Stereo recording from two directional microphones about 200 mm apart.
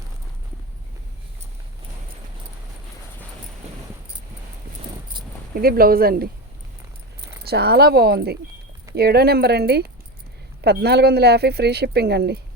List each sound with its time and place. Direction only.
3.6 s keys jangling: 35° right (ahead or behind)
5.5 s speech: 50° right (ahead or behind)